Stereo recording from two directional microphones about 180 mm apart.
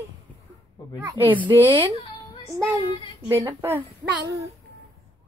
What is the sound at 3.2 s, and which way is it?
Speech, 15° right (ahead or behind).